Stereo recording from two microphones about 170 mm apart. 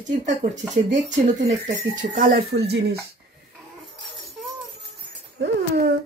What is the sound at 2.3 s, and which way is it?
Speech, 75° right (ahead or behind).